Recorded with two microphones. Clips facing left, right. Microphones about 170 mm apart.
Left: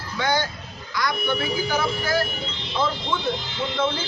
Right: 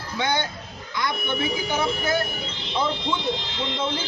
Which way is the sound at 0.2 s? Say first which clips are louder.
Left 2 dB; 25° right (ahead or behind).